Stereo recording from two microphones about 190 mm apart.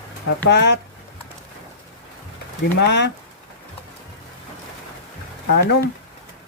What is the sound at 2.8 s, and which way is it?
Speech, 65° left (ahead or behind).